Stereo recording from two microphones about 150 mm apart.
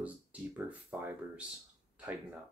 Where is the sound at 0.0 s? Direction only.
10° right (ahead or behind).